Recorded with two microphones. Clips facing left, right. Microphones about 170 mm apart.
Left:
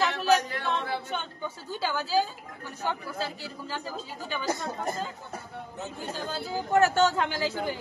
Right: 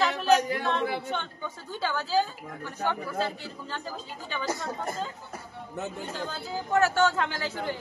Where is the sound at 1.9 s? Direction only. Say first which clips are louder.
Even; 10° left (ahead or behind).